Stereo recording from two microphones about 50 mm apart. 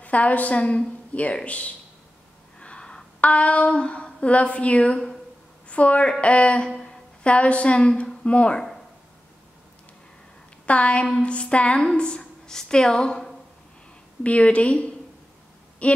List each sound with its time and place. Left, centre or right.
0.0 s a woman's voice: left
2.6 s a sound: centre
3.2 s a woman's voice: left
7.2 s a woman's voice: left
10.6 s a woman's voice: left
14.2 s a woman's voice: left